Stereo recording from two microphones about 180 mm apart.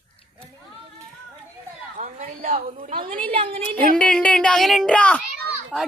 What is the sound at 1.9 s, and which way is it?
A woman's voice, 45° right (ahead or behind).